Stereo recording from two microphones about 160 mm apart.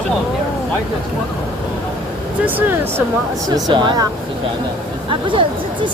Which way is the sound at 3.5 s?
30° right (ahead or behind).